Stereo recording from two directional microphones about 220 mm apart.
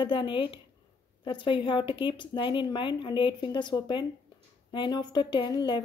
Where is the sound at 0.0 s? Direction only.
20° left (ahead or behind).